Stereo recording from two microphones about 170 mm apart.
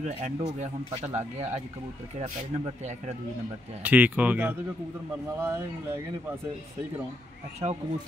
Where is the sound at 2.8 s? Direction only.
40° right (ahead or behind).